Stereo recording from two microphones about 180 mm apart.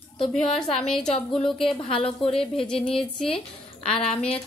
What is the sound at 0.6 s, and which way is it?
Speech, 5° left (ahead or behind).